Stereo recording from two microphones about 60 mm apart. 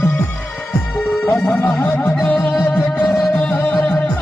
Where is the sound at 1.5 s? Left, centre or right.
Left.